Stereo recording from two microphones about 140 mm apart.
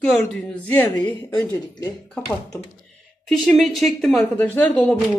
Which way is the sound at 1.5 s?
30° left (ahead or behind).